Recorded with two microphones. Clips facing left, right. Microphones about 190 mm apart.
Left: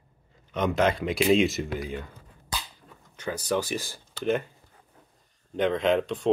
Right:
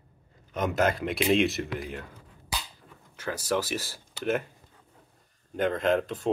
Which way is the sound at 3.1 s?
5° right (ahead or behind).